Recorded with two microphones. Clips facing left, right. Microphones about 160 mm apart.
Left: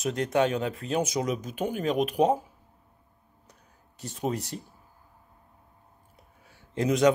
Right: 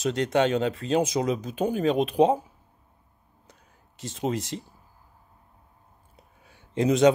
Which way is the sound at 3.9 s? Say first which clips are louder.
Right 2 dB; 90° right.